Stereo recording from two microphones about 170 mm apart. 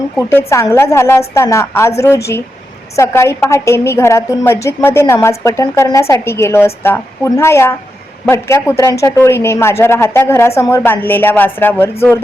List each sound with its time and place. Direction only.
0.2 s speech: 15° left (ahead or behind)